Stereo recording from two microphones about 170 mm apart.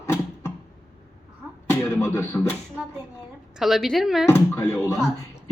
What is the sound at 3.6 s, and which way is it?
Speech, centre (ahead or behind).